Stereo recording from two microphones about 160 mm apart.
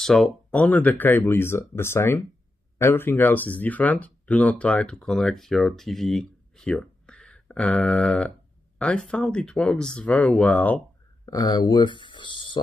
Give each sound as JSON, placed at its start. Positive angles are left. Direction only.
{"t": 0.0, "sound": "speech", "side_deg": 5}
{"t": 11.2, "sound": "speech", "side_deg": 25}